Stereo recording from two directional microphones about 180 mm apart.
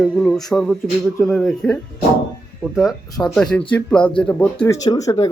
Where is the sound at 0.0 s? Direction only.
Centre (ahead or behind).